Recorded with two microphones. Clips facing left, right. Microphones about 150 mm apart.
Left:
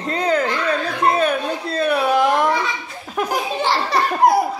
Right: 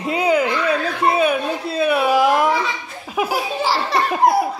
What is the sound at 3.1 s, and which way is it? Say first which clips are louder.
Laughter: right 1 dB; 5° right (ahead or behind).